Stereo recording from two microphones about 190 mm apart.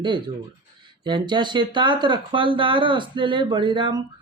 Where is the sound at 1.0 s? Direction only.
25° right (ahead or behind).